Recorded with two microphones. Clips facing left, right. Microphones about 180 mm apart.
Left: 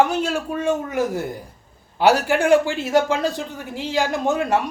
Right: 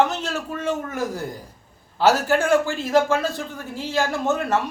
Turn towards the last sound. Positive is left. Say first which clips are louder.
# left 2 dB
turn(degrees=15)  # may be behind; listen again after turning